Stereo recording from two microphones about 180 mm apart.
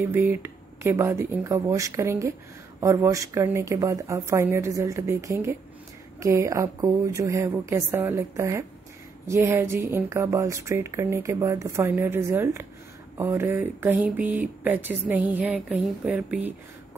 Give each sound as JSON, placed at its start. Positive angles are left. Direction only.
{"t": 0.0, "sound": "speech", "side_deg": -10}